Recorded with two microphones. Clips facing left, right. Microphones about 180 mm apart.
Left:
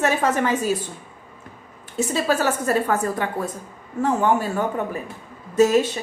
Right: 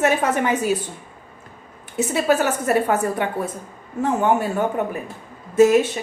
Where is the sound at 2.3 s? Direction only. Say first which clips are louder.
Right 3 dB; 20° right (ahead or behind).